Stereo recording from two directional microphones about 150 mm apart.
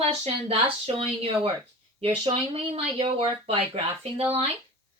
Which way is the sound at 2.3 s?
40° right (ahead or behind).